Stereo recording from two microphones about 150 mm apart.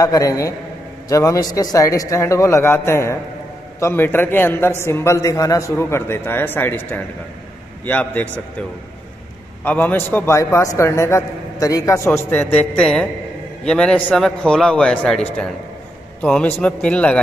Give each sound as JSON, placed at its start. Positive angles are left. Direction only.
{"t": 0.0, "sound": "a man's voice", "side_deg": 25}
{"t": 9.7, "sound": "a man's voice", "side_deg": 10}